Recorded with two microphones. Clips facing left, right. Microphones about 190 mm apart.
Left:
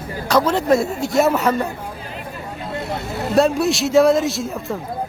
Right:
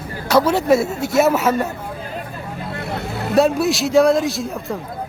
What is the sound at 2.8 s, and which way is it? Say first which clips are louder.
Vehicle: even; 60° right (ahead or behind).